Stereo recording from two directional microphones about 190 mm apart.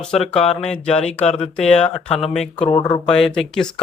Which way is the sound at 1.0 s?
35° left (ahead or behind).